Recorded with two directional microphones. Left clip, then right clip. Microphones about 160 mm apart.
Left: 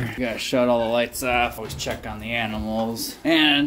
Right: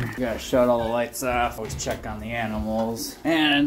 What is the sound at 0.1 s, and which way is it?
Speech, 45° left (ahead or behind).